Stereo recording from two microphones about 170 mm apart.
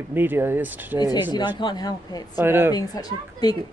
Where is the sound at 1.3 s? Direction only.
25° left (ahead or behind).